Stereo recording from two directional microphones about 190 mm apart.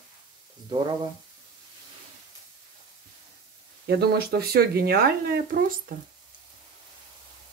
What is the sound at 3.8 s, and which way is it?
Speech, 55° right (ahead or behind).